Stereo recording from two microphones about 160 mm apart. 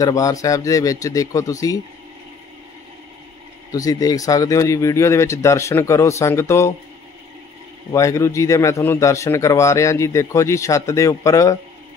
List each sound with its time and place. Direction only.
0.0 s a man's voice: 20° left (ahead or behind)
3.7 s a man's voice: 20° left (ahead or behind)
7.9 s a man's voice: 20° left (ahead or behind)